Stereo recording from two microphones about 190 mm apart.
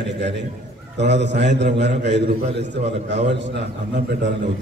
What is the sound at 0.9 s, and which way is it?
A man's voice, 65° right (ahead or behind).